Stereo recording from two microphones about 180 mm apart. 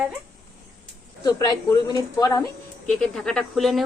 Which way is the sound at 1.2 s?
20° left (ahead or behind).